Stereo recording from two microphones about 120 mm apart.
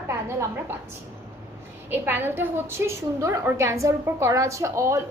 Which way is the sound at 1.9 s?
15° right (ahead or behind).